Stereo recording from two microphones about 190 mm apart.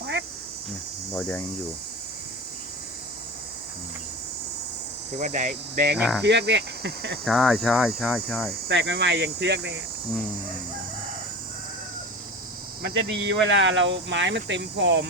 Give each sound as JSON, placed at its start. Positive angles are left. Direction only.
{"t": 0.0, "sound": "cricket", "side_deg": -65}
{"t": 1.1, "sound": "cricket", "side_deg": 5}
{"t": 5.1, "sound": "speech", "side_deg": -40}
{"t": 6.0, "sound": "cricket", "side_deg": 0}
{"t": 6.2, "sound": "speech", "side_deg": -60}
{"t": 7.3, "sound": "cricket", "side_deg": 0}
{"t": 8.6, "sound": "speech", "side_deg": -65}
{"t": 12.8, "sound": "speech", "side_deg": -65}